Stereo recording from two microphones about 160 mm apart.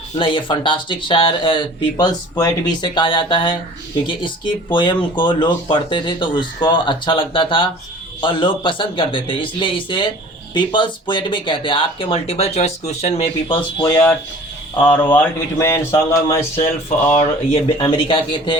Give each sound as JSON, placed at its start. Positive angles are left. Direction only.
{"t": 0.2, "sound": "speech", "side_deg": 30}
{"t": 15.0, "sound": "speech", "side_deg": 10}
{"t": 17.1, "sound": "speech", "side_deg": 40}